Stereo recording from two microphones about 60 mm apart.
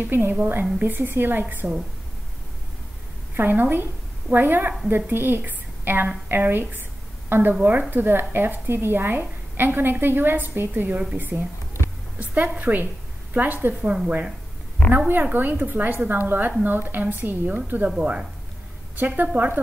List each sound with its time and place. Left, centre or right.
0.0 s a woman's voice: right
3.3 s a woman's voice: right
13.8 s speech: centre
14.9 s a woman's voice: right
18.9 s a woman's voice: right